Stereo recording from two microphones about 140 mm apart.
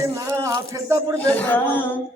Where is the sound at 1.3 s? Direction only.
15° left (ahead or behind).